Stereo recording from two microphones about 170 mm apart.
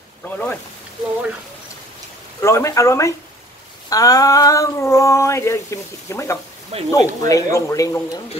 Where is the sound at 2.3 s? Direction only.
15° left (ahead or behind).